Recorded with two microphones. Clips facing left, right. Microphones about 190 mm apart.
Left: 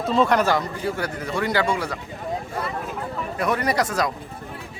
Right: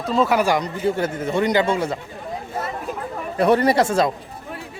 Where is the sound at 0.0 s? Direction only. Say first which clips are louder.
Right 1 dB; centre (ahead or behind); by 2.0 s 25° right (ahead or behind).